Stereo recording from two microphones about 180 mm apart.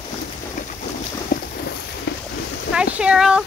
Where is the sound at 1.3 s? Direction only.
50° left (ahead or behind).